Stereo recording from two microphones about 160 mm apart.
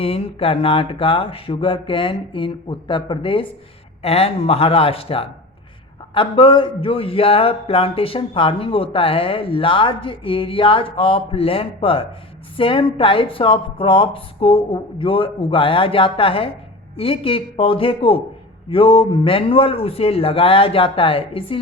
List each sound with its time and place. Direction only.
0.0 s speech: 35° left (ahead or behind)